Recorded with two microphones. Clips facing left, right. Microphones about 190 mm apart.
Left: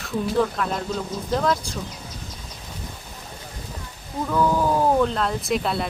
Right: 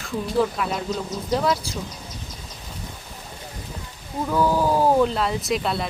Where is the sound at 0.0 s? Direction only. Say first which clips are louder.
Even; 5° right (ahead or behind).